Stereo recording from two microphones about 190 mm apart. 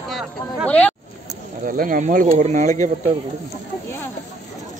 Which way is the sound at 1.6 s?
45° right (ahead or behind).